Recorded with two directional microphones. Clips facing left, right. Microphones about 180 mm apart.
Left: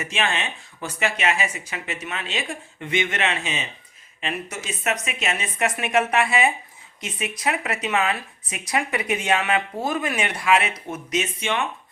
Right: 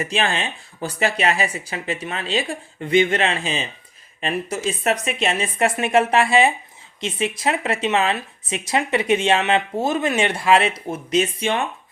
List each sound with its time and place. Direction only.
0.0 s speech: 35° right (ahead or behind)